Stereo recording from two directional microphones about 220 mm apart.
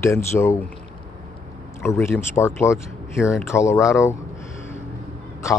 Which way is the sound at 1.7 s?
10° left (ahead or behind).